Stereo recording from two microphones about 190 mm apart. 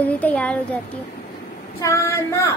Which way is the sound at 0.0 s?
10° left (ahead or behind).